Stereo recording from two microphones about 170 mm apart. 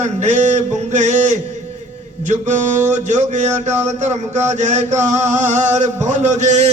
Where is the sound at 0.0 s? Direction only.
45° right (ahead or behind).